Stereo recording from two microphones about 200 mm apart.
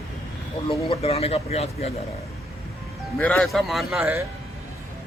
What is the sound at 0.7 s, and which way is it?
Speech, 25° left (ahead or behind).